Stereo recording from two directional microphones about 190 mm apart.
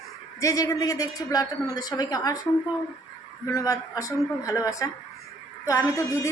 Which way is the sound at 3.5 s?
15° left (ahead or behind).